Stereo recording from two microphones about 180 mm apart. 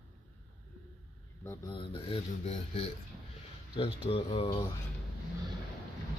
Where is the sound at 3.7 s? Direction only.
30° left (ahead or behind).